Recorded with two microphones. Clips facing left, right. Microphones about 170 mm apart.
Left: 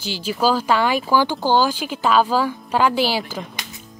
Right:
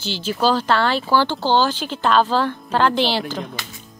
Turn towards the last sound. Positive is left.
turn(degrees=10)  # may be behind; listen again after turning